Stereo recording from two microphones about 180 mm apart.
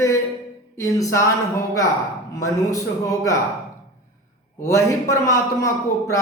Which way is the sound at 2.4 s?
20° left (ahead or behind).